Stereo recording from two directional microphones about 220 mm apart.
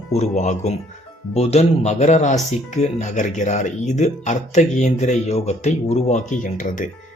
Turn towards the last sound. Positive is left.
turn(degrees=35)  # may be behind; listen again after turning